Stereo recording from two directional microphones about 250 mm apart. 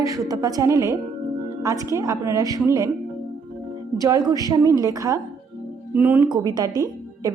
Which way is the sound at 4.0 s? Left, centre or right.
Centre.